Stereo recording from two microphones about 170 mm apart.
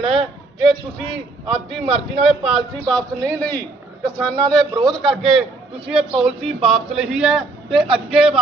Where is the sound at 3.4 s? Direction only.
10° left (ahead or behind).